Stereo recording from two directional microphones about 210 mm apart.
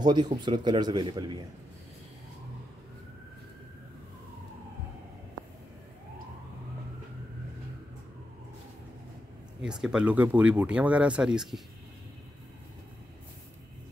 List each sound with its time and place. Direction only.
0.0 s a man's voice: 20° right (ahead or behind)
9.6 s speech: 5° right (ahead or behind)